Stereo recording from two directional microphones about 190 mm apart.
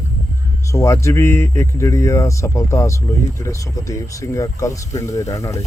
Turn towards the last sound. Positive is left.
turn(degrees=15)  # may be behind; listen again after turning